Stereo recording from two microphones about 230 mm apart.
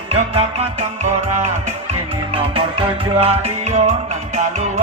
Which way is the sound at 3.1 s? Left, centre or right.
Right.